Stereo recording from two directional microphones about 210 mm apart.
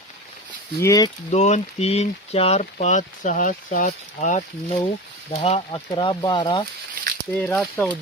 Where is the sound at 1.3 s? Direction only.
35° left (ahead or behind).